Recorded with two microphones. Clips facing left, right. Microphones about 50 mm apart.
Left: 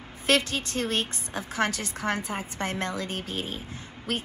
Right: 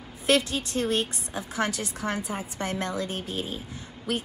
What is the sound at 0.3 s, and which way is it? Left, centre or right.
A woman's voice, left.